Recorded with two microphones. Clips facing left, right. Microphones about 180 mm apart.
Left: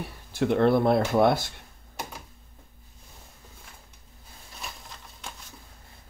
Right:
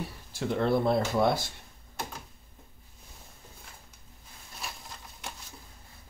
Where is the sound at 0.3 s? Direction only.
60° left (ahead or behind).